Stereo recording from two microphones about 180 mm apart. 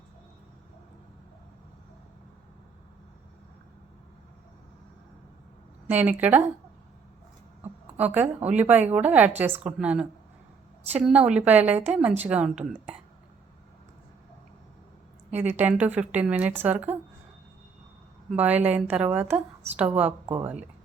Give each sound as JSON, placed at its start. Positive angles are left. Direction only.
{"t": 5.9, "sound": "a woman's voice", "side_deg": -10}
{"t": 7.6, "sound": "a woman's voice", "side_deg": -10}
{"t": 15.5, "sound": "a woman's voice", "side_deg": -10}
{"t": 18.3, "sound": "a woman's voice", "side_deg": -10}
{"t": 20.2, "sound": "speech", "side_deg": -30}